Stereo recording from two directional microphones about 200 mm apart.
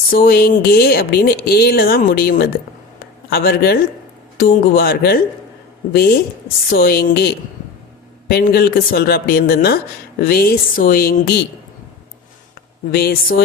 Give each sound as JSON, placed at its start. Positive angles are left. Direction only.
{"t": 0.1, "sound": "speech", "side_deg": 50}
{"t": 12.9, "sound": "speech", "side_deg": 50}